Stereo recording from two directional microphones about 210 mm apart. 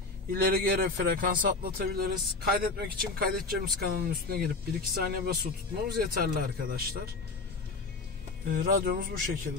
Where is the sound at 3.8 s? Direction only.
45° right (ahead or behind).